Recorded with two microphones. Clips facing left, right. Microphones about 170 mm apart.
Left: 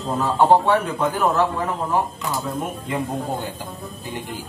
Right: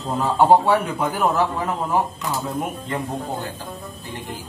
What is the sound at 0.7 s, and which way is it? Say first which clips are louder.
Speech: even; 10° right (ahead or behind).